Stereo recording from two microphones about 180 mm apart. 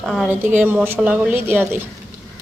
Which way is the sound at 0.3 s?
10° right (ahead or behind).